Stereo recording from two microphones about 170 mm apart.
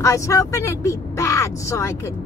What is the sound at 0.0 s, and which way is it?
Speech, 20° left (ahead or behind).